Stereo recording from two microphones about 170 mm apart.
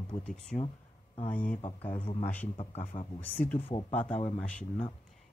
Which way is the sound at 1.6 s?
35° left (ahead or behind).